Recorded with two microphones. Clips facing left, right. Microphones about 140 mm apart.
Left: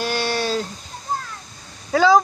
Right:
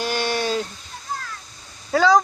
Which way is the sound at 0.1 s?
15° right (ahead or behind).